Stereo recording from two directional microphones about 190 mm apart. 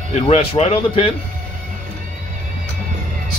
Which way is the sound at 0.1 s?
35° left (ahead or behind).